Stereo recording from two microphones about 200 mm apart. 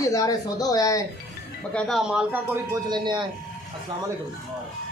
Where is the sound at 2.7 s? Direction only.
20° right (ahead or behind).